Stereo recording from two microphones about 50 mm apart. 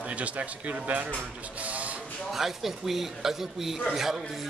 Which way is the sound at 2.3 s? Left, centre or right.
Centre.